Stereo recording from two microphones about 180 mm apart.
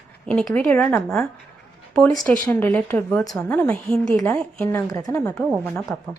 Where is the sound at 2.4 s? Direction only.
10° left (ahead or behind).